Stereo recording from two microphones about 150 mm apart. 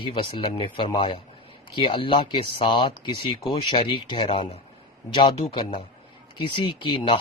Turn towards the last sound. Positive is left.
turn(degrees=35)  # may be behind; listen again after turning